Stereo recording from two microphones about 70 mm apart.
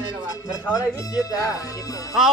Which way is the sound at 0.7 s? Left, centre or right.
Left.